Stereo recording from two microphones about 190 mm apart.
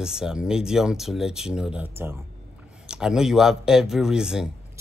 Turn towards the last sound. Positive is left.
turn(degrees=-5)  # may be behind; listen again after turning